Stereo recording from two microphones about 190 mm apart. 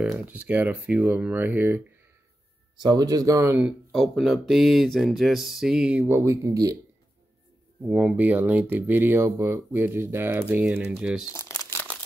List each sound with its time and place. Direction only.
0.1 s speech: 10° right (ahead or behind)
2.8 s speech: 20° right (ahead or behind)
7.8 s speech: 5° right (ahead or behind)
11.3 s crumpling: 15° left (ahead or behind)